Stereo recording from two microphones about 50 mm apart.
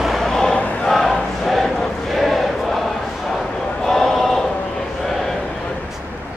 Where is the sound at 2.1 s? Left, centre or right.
Centre.